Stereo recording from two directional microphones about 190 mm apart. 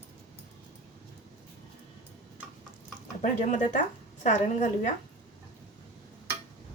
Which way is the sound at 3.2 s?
40° left (ahead or behind).